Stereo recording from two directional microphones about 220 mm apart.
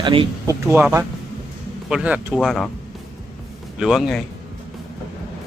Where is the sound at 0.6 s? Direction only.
10° right (ahead or behind).